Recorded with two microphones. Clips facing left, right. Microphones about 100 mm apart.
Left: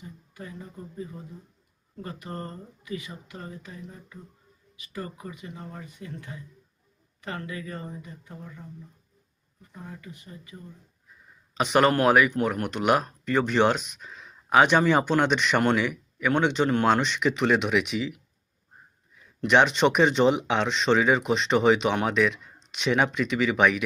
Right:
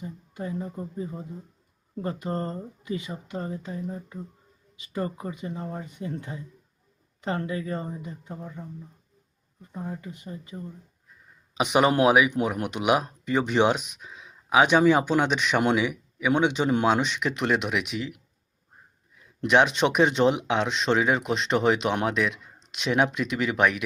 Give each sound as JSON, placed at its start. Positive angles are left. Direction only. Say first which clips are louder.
{"t": 0.0, "sound": "speech", "louder": "right 7 dB", "side_deg": -30}
{"t": 9.7, "sound": "speech", "louder": "right 7 dB", "side_deg": -30}
{"t": 11.5, "sound": "speech", "louder": "even", "side_deg": -10}
{"t": 19.5, "sound": "speech", "louder": "left 1 dB", "side_deg": -5}